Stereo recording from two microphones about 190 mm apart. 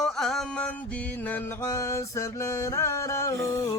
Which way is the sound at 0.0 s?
Centre (ahead or behind).